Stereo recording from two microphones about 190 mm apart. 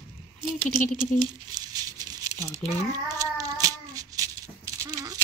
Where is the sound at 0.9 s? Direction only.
20° right (ahead or behind).